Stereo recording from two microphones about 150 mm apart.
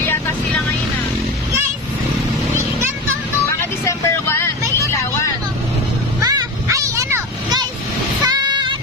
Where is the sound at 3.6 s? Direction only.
15° left (ahead or behind).